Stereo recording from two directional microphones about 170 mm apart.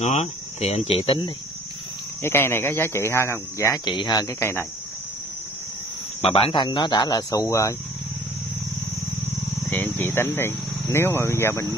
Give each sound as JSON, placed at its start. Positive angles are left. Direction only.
{"t": 0.0, "sound": "speech", "side_deg": 40}
{"t": 2.2, "sound": "speech", "side_deg": 15}
{"t": 6.2, "sound": "speech", "side_deg": 35}
{"t": 9.7, "sound": "speech", "side_deg": 10}